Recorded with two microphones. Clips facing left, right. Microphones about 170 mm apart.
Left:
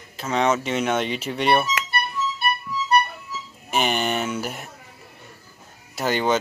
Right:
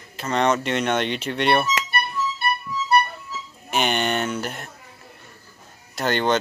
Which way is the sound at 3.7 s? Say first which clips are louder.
Even; centre (ahead or behind).